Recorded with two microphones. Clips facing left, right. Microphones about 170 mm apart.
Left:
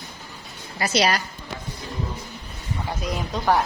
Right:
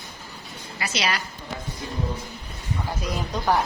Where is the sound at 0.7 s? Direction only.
40° left (ahead or behind).